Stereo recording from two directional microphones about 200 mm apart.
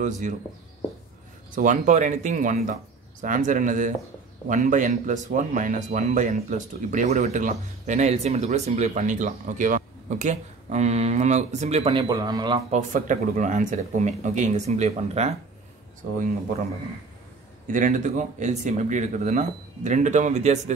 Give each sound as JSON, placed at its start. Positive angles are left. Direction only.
{"t": 0.2, "sound": "speech", "side_deg": -40}
{"t": 1.5, "sound": "speech", "side_deg": -40}
{"t": 12.7, "sound": "speech", "side_deg": -40}
{"t": 17.6, "sound": "speech", "side_deg": -40}